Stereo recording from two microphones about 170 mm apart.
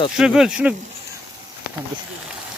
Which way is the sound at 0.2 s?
5° right (ahead or behind).